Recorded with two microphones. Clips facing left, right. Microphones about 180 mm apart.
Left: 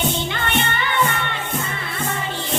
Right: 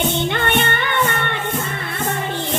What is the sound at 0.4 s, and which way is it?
Music, 55° right (ahead or behind).